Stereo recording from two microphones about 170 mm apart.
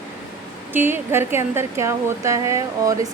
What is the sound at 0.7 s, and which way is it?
Speech, 10° right (ahead or behind).